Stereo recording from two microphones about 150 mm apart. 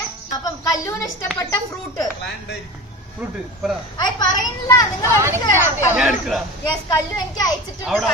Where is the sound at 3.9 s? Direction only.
30° left (ahead or behind).